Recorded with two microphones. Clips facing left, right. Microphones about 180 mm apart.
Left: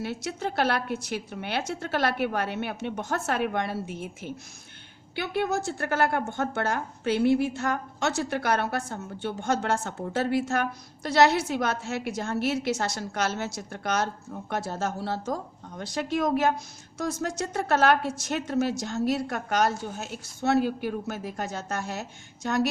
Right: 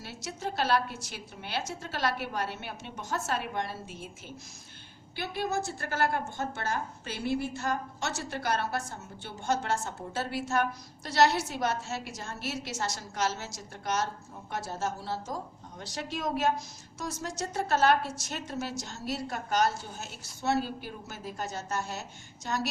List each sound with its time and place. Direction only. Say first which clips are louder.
0.0 s speech: left 6 dB; 60° left (ahead or behind)
5.3 s speech: left 5 dB; 60° left (ahead or behind)